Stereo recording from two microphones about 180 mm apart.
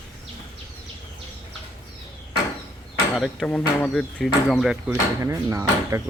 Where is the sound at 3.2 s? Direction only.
5° left (ahead or behind).